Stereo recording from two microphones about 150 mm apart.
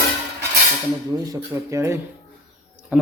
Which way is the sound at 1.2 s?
20° right (ahead or behind).